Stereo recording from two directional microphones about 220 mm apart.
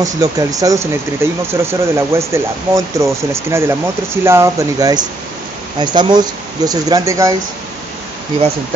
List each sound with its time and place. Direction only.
0.0 s speech: 15° right (ahead or behind)